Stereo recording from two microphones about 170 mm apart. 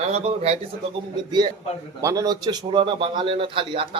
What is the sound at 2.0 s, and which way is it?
A man's voice, 20° right (ahead or behind).